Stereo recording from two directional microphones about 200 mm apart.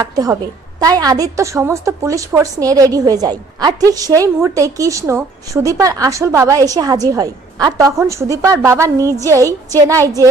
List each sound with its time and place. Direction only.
0.0 s a woman's voice: 15° right (ahead or behind)